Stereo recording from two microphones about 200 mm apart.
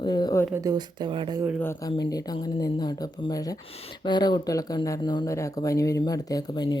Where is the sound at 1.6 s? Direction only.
15° left (ahead or behind).